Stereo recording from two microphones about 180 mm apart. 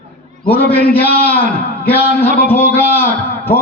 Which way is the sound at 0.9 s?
10° left (ahead or behind).